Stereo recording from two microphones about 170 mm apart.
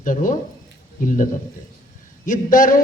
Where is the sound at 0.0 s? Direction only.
50° left (ahead or behind).